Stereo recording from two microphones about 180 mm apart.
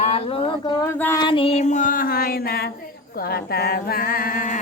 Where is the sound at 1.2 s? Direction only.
30° left (ahead or behind).